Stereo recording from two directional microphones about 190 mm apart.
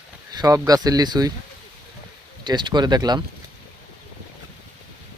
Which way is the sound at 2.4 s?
25° right (ahead or behind).